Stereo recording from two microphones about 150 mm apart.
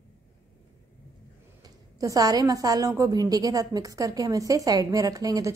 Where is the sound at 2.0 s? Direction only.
25° right (ahead or behind).